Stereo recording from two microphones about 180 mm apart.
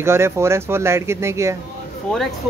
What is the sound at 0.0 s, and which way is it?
Speech, 15° right (ahead or behind).